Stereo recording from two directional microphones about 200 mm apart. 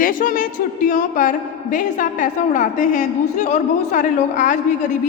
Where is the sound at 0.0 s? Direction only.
45° left (ahead or behind).